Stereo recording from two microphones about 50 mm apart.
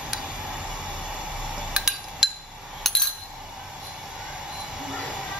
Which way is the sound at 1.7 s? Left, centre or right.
Centre.